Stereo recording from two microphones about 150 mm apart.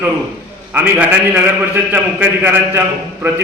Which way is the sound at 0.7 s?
10° right (ahead or behind).